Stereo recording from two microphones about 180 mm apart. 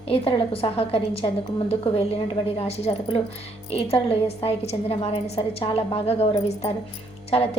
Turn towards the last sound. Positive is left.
turn(degrees=35)  # may be behind; listen again after turning